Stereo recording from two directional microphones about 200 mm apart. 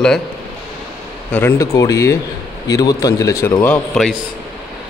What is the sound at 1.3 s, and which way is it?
Speech, 15° left (ahead or behind).